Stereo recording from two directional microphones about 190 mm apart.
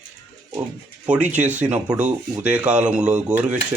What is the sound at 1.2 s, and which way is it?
Speech, 40° right (ahead or behind).